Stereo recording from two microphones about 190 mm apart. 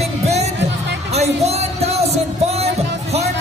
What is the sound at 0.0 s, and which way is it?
Music, 35° right (ahead or behind).